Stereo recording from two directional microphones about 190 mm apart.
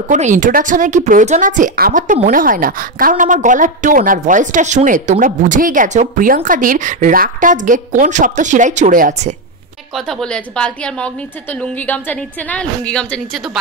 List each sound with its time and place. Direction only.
0.1 s a woman's voice: 40° right (ahead or behind)
9.9 s a woman's voice: centre (ahead or behind)